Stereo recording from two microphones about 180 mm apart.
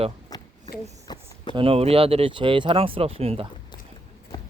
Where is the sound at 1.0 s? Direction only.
25° left (ahead or behind).